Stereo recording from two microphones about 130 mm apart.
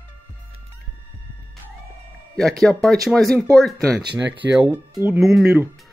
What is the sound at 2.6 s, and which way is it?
Speech, 5° left (ahead or behind).